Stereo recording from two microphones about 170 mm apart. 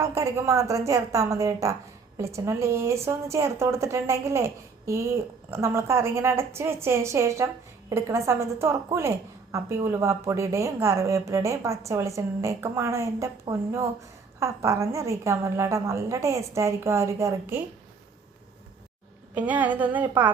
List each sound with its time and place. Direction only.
0.0 s a woman's voice: 15° right (ahead or behind)
19.3 s a woman's voice: 10° right (ahead or behind)